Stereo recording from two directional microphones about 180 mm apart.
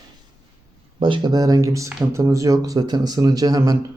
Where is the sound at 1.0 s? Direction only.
25° right (ahead or behind).